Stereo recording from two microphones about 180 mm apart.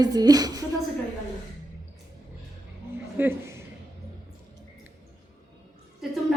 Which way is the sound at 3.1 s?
10° right (ahead or behind).